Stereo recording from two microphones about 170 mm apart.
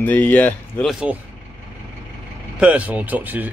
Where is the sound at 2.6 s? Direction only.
10° right (ahead or behind).